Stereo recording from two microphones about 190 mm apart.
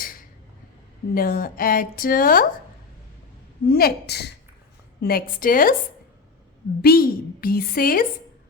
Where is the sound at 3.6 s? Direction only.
55° left (ahead or behind).